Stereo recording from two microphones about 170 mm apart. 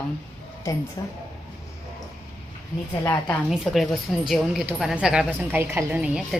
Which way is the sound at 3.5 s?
Centre (ahead or behind).